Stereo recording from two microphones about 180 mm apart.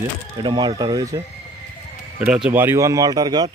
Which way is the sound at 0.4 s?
25° right (ahead or behind).